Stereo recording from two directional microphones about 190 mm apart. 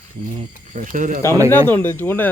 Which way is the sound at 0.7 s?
45° right (ahead or behind).